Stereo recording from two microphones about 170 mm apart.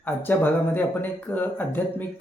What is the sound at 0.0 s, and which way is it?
Speech, 10° left (ahead or behind).